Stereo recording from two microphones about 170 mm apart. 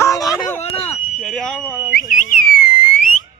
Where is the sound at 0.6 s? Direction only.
35° left (ahead or behind).